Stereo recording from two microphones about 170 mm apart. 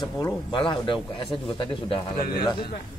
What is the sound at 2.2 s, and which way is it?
Speech, 65° left (ahead or behind).